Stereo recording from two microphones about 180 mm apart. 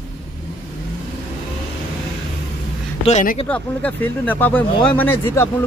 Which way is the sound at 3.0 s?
45° left (ahead or behind).